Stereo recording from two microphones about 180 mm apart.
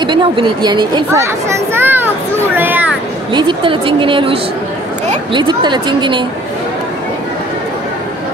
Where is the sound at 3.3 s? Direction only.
25° right (ahead or behind).